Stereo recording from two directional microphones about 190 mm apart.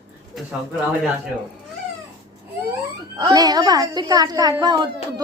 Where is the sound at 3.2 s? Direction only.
20° right (ahead or behind).